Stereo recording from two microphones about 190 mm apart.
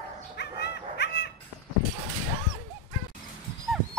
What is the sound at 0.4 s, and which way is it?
Dog, 60° left (ahead or behind).